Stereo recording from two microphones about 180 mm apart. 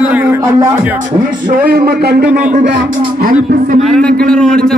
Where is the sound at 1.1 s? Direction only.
50° right (ahead or behind).